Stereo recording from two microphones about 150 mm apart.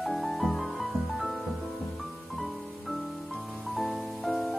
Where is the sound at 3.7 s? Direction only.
Centre (ahead or behind).